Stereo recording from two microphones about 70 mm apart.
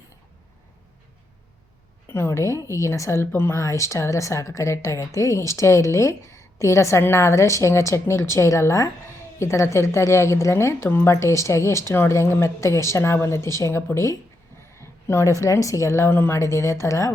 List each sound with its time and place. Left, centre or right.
2.0 s a woman's voice: left
2.4 s speech: left